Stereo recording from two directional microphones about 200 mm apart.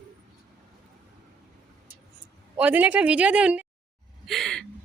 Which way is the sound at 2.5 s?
5° right (ahead or behind).